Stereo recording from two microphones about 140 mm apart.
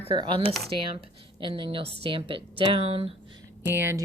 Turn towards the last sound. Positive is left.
turn(degrees=-15)  # may be behind; listen again after turning